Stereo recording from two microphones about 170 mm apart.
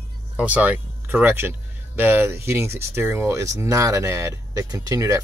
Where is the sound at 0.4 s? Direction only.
5° right (ahead or behind).